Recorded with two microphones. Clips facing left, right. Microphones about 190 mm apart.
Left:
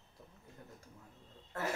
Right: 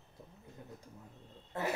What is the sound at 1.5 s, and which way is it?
Speech, 15° right (ahead or behind).